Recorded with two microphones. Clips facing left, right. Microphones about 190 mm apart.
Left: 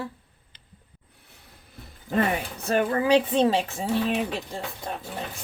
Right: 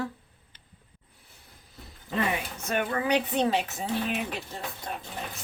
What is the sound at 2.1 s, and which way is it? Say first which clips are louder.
Speech: left 4 dB; 40° left (ahead or behind).